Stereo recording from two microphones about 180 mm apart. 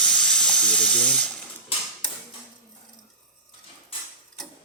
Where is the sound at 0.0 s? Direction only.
5° left (ahead or behind).